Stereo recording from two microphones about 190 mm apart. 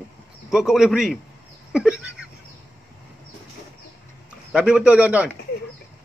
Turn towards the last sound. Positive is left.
turn(degrees=-5)  # may be behind; listen again after turning